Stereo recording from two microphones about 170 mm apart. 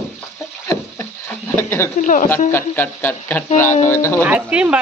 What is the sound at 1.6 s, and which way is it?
Speech, 15° left (ahead or behind).